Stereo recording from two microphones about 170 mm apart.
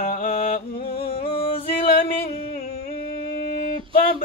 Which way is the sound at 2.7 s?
60° left (ahead or behind).